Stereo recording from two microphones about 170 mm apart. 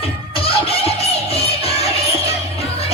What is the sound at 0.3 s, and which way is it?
Music, 35° left (ahead or behind).